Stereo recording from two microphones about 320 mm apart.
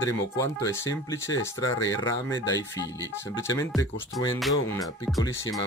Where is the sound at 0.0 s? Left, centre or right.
Centre.